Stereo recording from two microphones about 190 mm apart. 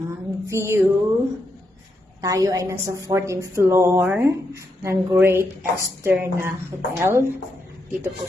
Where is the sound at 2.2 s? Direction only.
20° right (ahead or behind).